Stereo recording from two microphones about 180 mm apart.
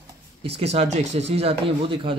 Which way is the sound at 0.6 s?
35° right (ahead or behind).